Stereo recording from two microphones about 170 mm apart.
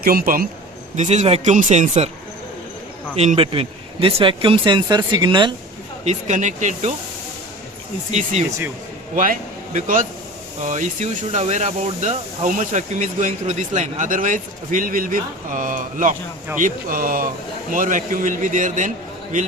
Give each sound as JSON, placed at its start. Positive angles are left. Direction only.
{"t": 0.0, "sound": "speech", "side_deg": -65}
{"t": 0.9, "sound": "speech", "side_deg": -40}
{"t": 3.2, "sound": "speech", "side_deg": -35}
{"t": 6.1, "sound": "speech", "side_deg": -45}
{"t": 8.1, "sound": "speech", "side_deg": -45}
{"t": 8.4, "sound": "speech", "side_deg": -15}
{"t": 9.1, "sound": "a man's voice", "side_deg": -50}